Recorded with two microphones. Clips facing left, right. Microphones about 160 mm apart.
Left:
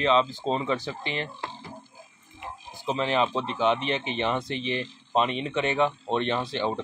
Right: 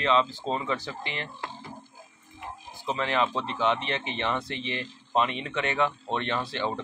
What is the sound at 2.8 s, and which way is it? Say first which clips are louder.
Speech: left 2 dB; 20° left (ahead or behind).